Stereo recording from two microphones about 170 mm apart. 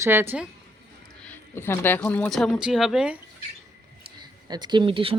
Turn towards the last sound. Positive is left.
turn(degrees=-30)  # may be behind; listen again after turning